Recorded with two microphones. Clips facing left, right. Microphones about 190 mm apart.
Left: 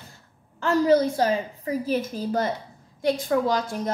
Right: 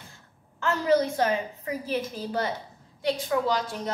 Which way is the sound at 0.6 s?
35° left (ahead or behind).